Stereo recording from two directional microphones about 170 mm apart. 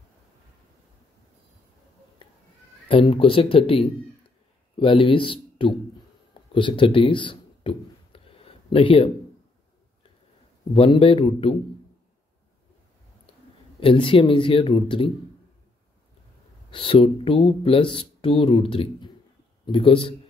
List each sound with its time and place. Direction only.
2.9 s speech: 35° left (ahead or behind)
6.5 s a sound: 30° left (ahead or behind)
10.7 s speech: 30° left (ahead or behind)
13.7 s speech: 30° left (ahead or behind)
16.7 s speech: 30° left (ahead or behind)